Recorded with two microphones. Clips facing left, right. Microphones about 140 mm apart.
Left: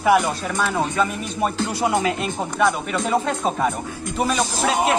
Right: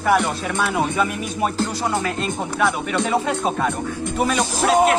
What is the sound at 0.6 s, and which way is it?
Speech, 10° right (ahead or behind).